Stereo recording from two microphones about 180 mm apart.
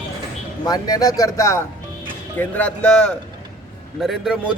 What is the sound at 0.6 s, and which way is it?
A man's voice, 20° left (ahead or behind).